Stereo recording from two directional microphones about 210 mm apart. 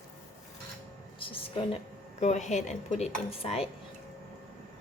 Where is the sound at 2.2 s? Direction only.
35° left (ahead or behind).